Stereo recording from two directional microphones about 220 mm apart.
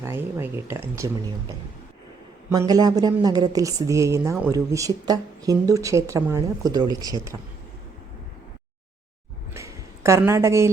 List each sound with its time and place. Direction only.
0.0 s a woman's voice: 10° right (ahead or behind)
2.5 s a woman's voice: 15° right (ahead or behind)
9.6 s a sound: 15° right (ahead or behind)